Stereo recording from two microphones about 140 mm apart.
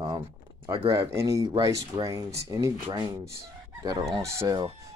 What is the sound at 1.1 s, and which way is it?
Speech, 20° right (ahead or behind).